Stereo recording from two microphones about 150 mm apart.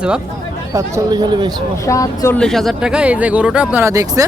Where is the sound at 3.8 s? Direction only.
20° right (ahead or behind).